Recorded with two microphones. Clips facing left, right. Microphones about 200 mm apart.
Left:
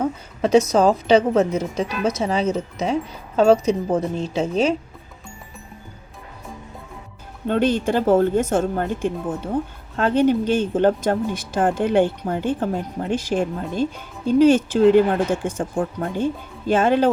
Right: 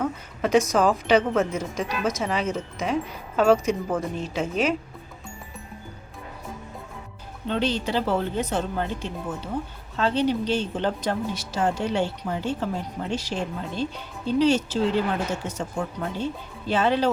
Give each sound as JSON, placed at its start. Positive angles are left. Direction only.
{"t": 0.0, "sound": "speech", "side_deg": 30}
{"t": 7.4, "sound": "speech", "side_deg": 50}